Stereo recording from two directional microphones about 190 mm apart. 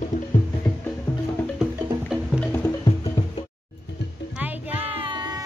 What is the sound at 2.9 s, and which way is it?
Music, 25° left (ahead or behind).